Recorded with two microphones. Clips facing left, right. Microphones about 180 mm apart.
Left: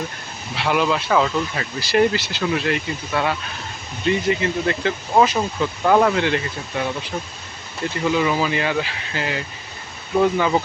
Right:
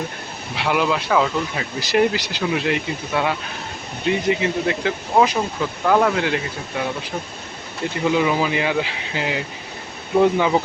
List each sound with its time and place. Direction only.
0.5 s speech: 10° right (ahead or behind)
5.8 s speech: centre (ahead or behind)
8.1 s speech: 15° right (ahead or behind)